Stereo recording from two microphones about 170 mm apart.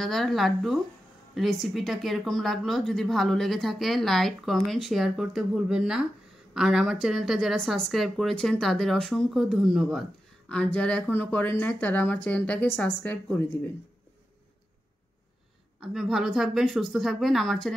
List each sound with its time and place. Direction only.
0.0 s speech: centre (ahead or behind)
15.8 s speech: centre (ahead or behind)